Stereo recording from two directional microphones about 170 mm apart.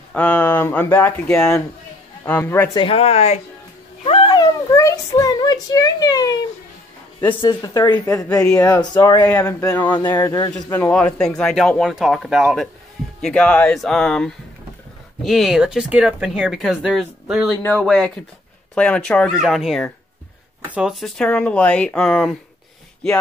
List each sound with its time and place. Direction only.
0.1 s speech: 10° left (ahead or behind)
2.7 s speech: 30° left (ahead or behind)
4.0 s cat: 35° left (ahead or behind)
4.4 s a child's voice: 20° left (ahead or behind)
7.4 s speech: 25° left (ahead or behind)
9.2 s speech: 10° left (ahead or behind)
10.1 s speech: 20° left (ahead or behind); by 22.4 s 5° left (ahead or behind)